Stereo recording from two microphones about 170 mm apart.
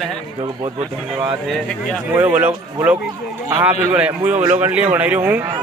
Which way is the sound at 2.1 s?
10° right (ahead or behind).